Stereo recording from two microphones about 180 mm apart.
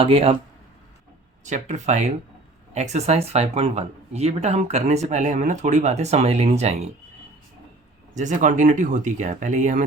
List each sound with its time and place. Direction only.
0.0 s speech: 30° right (ahead or behind)
1.5 s speech: 40° right (ahead or behind)
8.1 s speech: 45° right (ahead or behind)